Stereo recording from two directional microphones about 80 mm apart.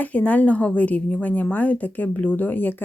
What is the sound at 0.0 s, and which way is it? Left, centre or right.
A woman's voice, centre.